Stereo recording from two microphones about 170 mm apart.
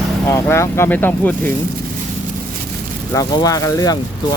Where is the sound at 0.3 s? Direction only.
15° left (ahead or behind).